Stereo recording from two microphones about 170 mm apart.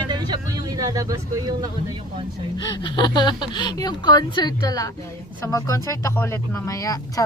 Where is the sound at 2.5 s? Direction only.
25° left (ahead or behind).